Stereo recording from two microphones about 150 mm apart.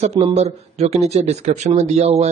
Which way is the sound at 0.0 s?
45° right (ahead or behind).